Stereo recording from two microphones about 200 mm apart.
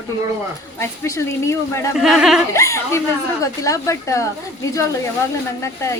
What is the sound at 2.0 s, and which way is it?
Speech, centre (ahead or behind).